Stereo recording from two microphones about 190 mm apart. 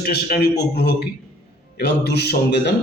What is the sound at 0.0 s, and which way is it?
A man's voice, 55° left (ahead or behind).